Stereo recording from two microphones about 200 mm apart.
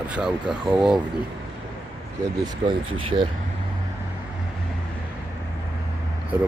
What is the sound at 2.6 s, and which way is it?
Speech, 25° right (ahead or behind).